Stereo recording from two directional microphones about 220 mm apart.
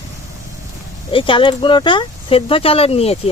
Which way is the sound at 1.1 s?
25° left (ahead or behind).